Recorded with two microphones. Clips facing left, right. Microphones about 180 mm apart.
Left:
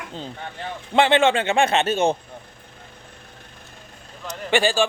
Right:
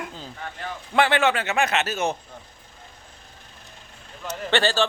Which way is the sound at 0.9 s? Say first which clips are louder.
Left 3 dB; 25° left (ahead or behind).